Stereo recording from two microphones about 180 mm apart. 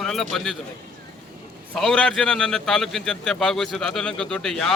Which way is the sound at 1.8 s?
5° left (ahead or behind).